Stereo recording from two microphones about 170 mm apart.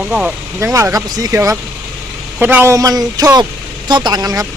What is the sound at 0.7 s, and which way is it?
Speech, 20° right (ahead or behind).